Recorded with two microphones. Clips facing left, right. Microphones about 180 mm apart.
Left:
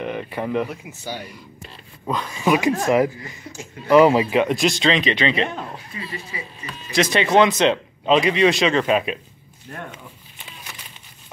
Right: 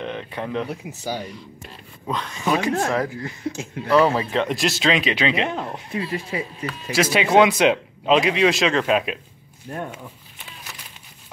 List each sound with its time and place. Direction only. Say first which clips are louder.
0.0 s speech: left 3 dB; 5° left (ahead or behind)
0.7 s speech: right 3 dB; 40° right (ahead or behind)
2.0 s speech: left 3 dB; 5° left (ahead or behind)
3.9 s speech: left 4 dB; 15° left (ahead or behind)
4.6 s speech: left 2 dB; 5° right (ahead or behind)
5.9 s speech: right 9 dB; 75° right (ahead or behind)
6.9 s speech: even; 5° right (ahead or behind)
10.4 s a sound: even; centre (ahead or behind)